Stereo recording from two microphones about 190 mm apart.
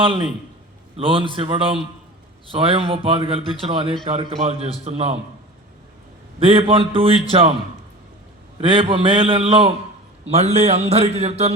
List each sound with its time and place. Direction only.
0.0 s a man's voice: 25° right (ahead or behind)
6.4 s a man's voice: 30° right (ahead or behind)
8.6 s a man's voice: 25° right (ahead or behind)